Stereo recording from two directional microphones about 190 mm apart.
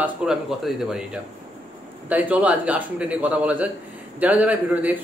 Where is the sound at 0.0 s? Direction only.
5° right (ahead or behind).